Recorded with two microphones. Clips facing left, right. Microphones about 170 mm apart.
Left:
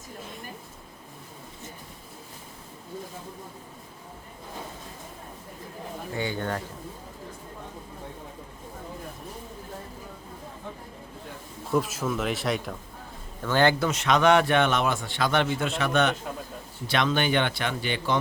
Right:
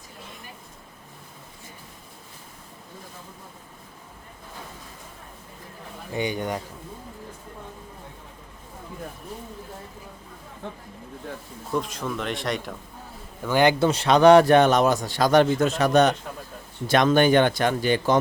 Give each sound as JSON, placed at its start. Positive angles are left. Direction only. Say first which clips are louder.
{"t": 6.1, "sound": "a man's voice", "louder": "right 3 dB", "side_deg": -15}
{"t": 11.7, "sound": "speech", "louder": "left 2 dB", "side_deg": 5}
{"t": 13.4, "sound": "a man's voice", "louder": "right 2 dB", "side_deg": -15}
{"t": 13.7, "sound": "a man's voice", "louder": "right 5 dB", "side_deg": -30}